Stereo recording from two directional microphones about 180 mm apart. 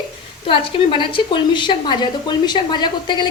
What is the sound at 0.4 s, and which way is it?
A woman's voice, 30° left (ahead or behind).